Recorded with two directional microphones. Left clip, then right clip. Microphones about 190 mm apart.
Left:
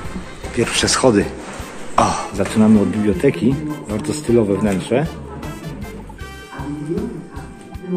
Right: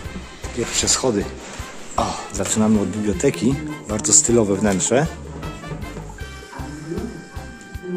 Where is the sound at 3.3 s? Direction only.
20° right (ahead or behind).